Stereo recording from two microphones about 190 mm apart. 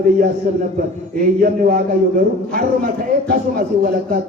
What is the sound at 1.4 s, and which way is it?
Speech, 50° right (ahead or behind).